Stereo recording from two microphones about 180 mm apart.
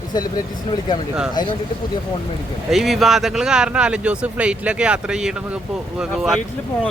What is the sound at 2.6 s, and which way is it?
Speech, centre (ahead or behind).